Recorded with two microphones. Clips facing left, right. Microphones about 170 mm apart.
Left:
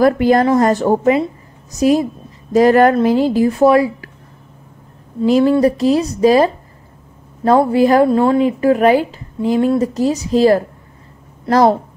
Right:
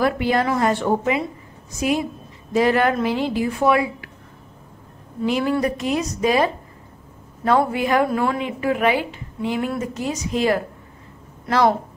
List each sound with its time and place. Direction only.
0.0 s a woman's voice: 45° left (ahead or behind)
5.2 s a woman's voice: 35° left (ahead or behind)